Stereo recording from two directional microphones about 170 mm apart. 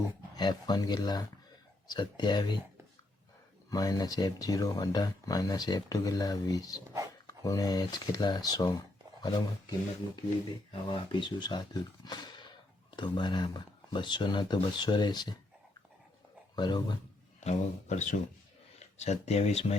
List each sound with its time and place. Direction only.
0.3 s speech: 25° left (ahead or behind)
3.7 s speech: 20° left (ahead or behind)
16.6 s speech: 25° left (ahead or behind)
17.4 s speech: 40° left (ahead or behind)